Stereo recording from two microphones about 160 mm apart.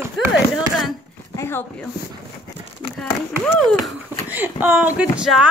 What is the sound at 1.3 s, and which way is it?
Speech, 15° left (ahead or behind).